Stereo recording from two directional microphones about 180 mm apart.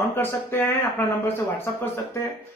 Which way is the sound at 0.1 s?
10° left (ahead or behind).